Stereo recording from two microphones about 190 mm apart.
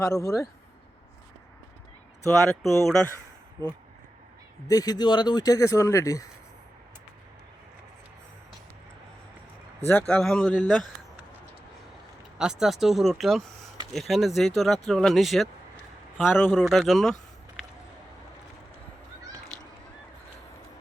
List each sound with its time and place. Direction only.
0.1 s speech: 15° left (ahead or behind)
2.2 s speech: 15° left (ahead or behind)
3.6 s speech: 20° right (ahead or behind)
4.7 s speech: 20° left (ahead or behind)
10.1 s speech: 5° left (ahead or behind)
12.4 s speech: 5° right (ahead or behind)